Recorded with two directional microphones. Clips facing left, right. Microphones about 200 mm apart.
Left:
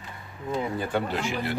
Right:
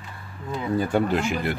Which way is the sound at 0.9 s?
50° right (ahead or behind).